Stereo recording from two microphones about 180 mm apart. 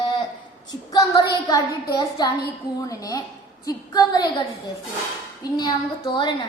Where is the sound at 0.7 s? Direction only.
20° left (ahead or behind).